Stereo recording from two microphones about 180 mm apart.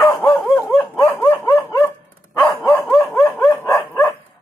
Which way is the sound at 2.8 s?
5° left (ahead or behind).